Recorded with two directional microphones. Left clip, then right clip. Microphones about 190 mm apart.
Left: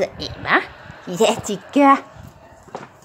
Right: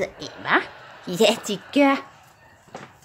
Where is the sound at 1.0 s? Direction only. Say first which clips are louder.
Left 2 dB; 20° right (ahead or behind).